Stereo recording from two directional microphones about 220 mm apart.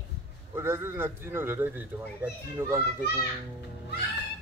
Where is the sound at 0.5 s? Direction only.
10° right (ahead or behind).